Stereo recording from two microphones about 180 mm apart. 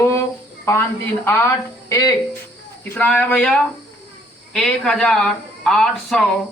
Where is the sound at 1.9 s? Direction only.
15° left (ahead or behind).